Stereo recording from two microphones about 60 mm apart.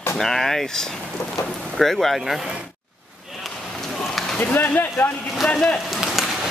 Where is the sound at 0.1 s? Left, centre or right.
Centre.